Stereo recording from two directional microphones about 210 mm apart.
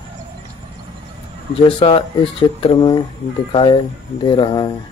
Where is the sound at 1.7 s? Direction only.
25° left (ahead or behind).